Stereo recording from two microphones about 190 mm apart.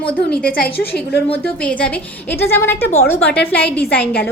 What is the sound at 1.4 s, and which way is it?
A woman's voice, 5° left (ahead or behind).